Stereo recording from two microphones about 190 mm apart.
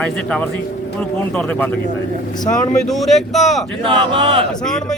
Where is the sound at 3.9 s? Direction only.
25° right (ahead or behind).